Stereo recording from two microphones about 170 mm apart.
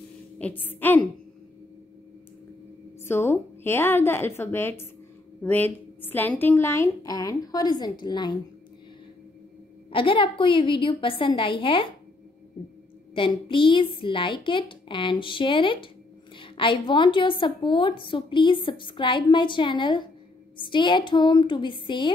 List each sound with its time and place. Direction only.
0.4 s a woman's voice: 10° left (ahead or behind)
3.0 s a woman's voice: 15° left (ahead or behind)
9.8 s a woman's voice: 30° left (ahead or behind)
13.1 s a woman's voice: 30° left (ahead or behind)